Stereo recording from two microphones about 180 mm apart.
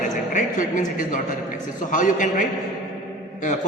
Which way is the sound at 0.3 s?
45° left (ahead or behind).